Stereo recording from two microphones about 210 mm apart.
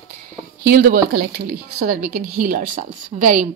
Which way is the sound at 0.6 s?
45° right (ahead or behind).